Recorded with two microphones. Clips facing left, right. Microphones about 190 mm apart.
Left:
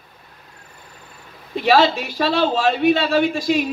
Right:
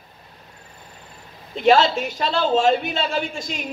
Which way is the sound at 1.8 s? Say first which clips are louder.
Left 3 dB; 65° left (ahead or behind).